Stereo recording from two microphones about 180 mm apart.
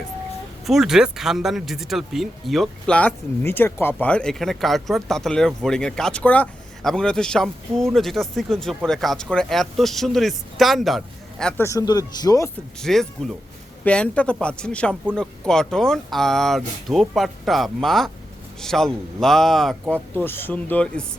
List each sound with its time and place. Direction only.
0.7 s speech: centre (ahead or behind)
11.6 s speech: 15° left (ahead or behind)
12.8 s speech: centre (ahead or behind)